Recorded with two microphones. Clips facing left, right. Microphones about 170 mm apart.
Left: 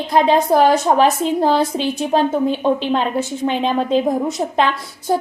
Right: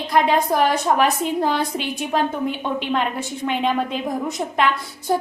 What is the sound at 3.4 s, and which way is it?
A woman's voice, 30° left (ahead or behind).